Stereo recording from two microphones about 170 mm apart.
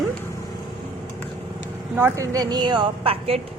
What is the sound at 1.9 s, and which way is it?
A woman's voice, 15° right (ahead or behind).